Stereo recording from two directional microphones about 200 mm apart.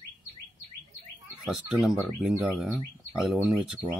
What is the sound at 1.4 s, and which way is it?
Speech, 5° right (ahead or behind).